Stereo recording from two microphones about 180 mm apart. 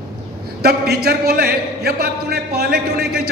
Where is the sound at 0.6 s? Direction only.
60° right (ahead or behind).